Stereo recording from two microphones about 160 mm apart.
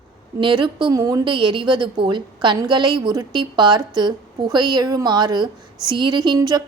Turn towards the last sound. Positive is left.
turn(degrees=-25)  # may be behind; listen again after turning